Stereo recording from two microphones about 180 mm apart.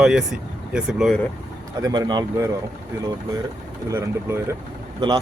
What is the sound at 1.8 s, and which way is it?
Speech, 25° right (ahead or behind).